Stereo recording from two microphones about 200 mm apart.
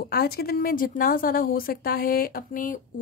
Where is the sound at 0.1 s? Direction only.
50° left (ahead or behind).